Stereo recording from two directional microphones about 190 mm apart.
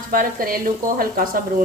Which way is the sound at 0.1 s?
50° right (ahead or behind).